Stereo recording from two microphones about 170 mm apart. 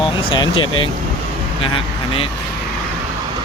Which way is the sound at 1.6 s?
35° left (ahead or behind).